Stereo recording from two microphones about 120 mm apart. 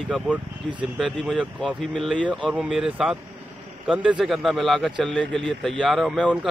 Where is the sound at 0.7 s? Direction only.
5° left (ahead or behind).